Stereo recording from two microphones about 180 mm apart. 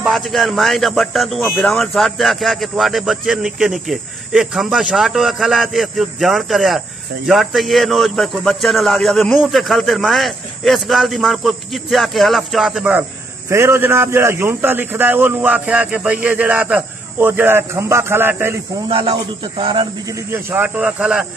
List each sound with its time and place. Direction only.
0.0 s a man's voice: centre (ahead or behind)
18.9 s a man's voice: 30° right (ahead or behind); by 21.3 s 5° right (ahead or behind)